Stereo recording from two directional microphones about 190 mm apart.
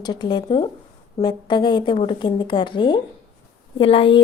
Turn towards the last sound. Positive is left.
turn(degrees=25)  # may be behind; listen again after turning